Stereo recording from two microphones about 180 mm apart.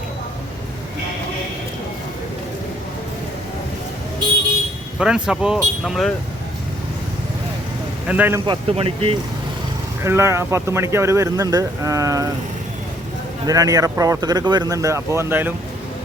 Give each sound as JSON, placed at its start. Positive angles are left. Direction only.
{"t": 4.9, "sound": "speech", "side_deg": -5}
{"t": 8.0, "sound": "speech", "side_deg": -10}
{"t": 8.4, "sound": "speech", "side_deg": -30}
{"t": 10.0, "sound": "speech", "side_deg": -15}
{"t": 13.5, "sound": "speech", "side_deg": -20}